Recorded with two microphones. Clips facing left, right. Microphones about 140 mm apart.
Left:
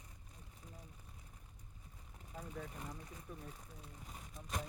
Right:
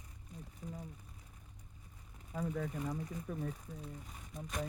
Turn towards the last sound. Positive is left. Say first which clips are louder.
# right 10 dB
turn(degrees=-90)